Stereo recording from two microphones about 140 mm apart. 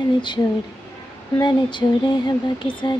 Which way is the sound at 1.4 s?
35° left (ahead or behind).